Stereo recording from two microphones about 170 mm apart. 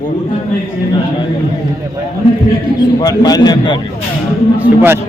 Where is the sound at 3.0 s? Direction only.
20° left (ahead or behind).